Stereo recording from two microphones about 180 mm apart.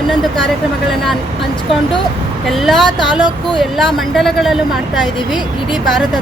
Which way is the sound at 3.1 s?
25° left (ahead or behind).